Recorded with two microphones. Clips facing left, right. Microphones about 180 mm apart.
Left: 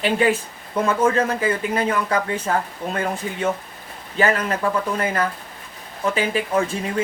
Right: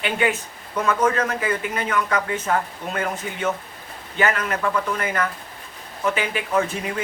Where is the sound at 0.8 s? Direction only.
30° left (ahead or behind).